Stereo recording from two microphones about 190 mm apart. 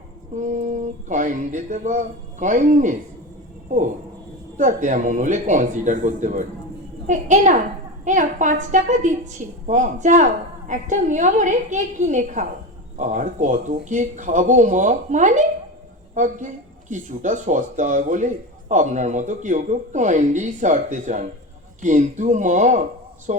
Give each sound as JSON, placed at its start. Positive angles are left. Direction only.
{"t": 0.3, "sound": "speech", "side_deg": -40}
{"t": 4.5, "sound": "speech", "side_deg": -40}